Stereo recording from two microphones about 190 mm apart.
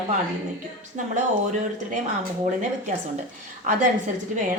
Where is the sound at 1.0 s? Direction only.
40° right (ahead or behind).